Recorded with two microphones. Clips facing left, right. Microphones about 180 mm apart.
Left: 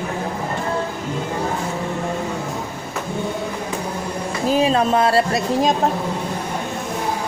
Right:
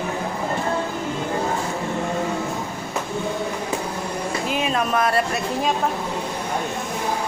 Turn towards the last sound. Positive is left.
turn(degrees=30)  # may be behind; listen again after turning